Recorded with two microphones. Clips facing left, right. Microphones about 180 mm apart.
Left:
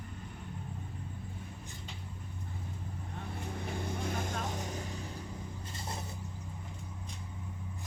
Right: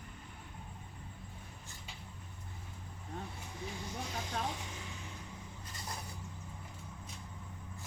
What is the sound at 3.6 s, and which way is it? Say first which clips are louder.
Vehicle: left 4 dB; 55° left (ahead or behind).